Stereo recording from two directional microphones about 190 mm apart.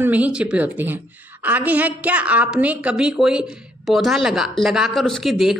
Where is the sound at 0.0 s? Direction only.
10° right (ahead or behind).